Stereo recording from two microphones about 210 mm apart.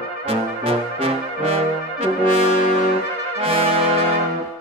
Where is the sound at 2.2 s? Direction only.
35° left (ahead or behind).